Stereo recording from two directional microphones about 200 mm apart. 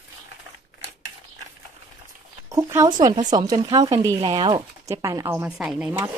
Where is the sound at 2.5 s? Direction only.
15° right (ahead or behind).